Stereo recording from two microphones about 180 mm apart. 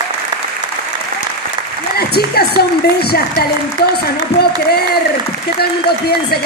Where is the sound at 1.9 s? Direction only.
60° left (ahead or behind).